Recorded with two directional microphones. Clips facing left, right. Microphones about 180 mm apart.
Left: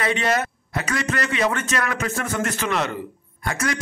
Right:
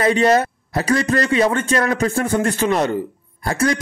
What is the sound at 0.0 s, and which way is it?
Speech, 35° right (ahead or behind).